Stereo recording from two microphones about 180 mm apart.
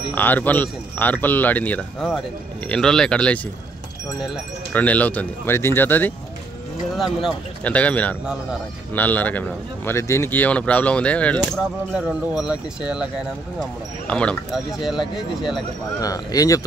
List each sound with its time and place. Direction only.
0.1 s a man's voice: 10° left (ahead or behind)
4.7 s a man's voice: 10° left (ahead or behind)
7.0 s a man's voice: centre (ahead or behind)
11.9 s speech: 5° right (ahead or behind)
13.6 s speech: 5° left (ahead or behind)
16.0 s speech: 20° left (ahead or behind)